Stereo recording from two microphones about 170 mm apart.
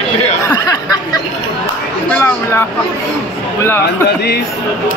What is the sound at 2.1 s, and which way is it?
Speech, 15° left (ahead or behind).